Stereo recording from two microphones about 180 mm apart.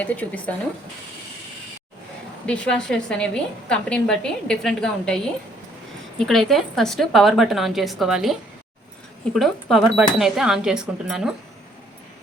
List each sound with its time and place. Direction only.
0.0 s a woman's voice: 10° left (ahead or behind)
2.5 s a woman's voice: 5° left (ahead or behind)